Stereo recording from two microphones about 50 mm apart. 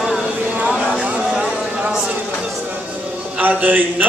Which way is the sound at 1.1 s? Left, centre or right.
Centre.